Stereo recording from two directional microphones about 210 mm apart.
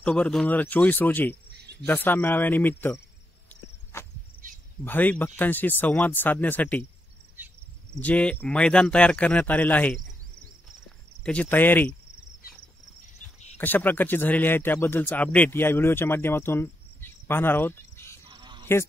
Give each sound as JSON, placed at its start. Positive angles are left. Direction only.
{"t": 0.0, "sound": "speech", "side_deg": 5}
{"t": 3.9, "sound": "cricket", "side_deg": 10}
{"t": 4.8, "sound": "speech", "side_deg": 10}
{"t": 8.0, "sound": "speech", "side_deg": 5}
{"t": 11.2, "sound": "speech", "side_deg": 5}
{"t": 13.6, "sound": "speech", "side_deg": 10}
{"t": 18.3, "sound": "bleat", "side_deg": -20}